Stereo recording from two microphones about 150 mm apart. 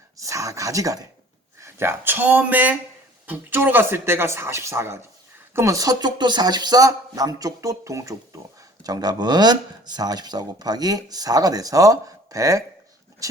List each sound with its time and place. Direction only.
0.2 s speech: 20° right (ahead or behind)